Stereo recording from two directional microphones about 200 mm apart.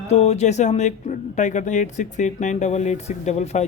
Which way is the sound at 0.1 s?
30° left (ahead or behind).